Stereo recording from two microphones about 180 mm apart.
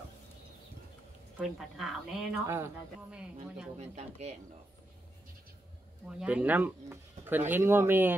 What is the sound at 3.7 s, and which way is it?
Speech, 35° right (ahead or behind).